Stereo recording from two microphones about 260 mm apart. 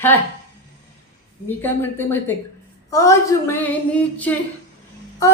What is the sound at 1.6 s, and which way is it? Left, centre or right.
Music, centre.